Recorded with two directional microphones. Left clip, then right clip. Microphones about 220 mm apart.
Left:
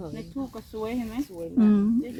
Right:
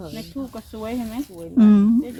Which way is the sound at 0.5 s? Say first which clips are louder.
Right 2 dB; 35° right (ahead or behind).